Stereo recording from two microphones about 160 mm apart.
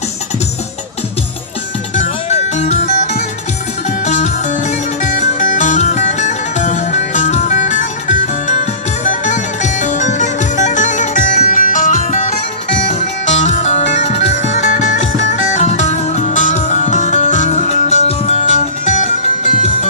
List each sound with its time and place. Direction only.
2.0 s music: 45° left (ahead or behind)